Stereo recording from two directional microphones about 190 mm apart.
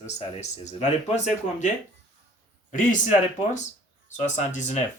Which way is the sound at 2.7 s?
40° left (ahead or behind).